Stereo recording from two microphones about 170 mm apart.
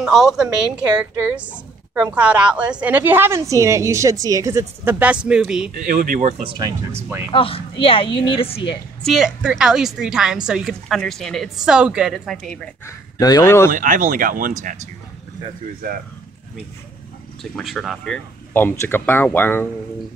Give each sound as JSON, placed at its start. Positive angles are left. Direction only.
{"t": 0.0, "sound": "a woman's voice", "side_deg": 0}
{"t": 5.9, "sound": "speech", "side_deg": -55}
{"t": 6.4, "sound": "speech", "side_deg": -30}
{"t": 7.2, "sound": "speech", "side_deg": 35}
{"t": 9.0, "sound": "a woman's voice", "side_deg": 0}
{"t": 12.8, "sound": "speech", "side_deg": 20}
{"t": 13.7, "sound": "speech", "side_deg": -50}
{"t": 17.4, "sound": "speech", "side_deg": 0}